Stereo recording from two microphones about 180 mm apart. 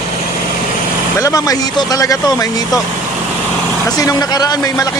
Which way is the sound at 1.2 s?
20° left (ahead or behind).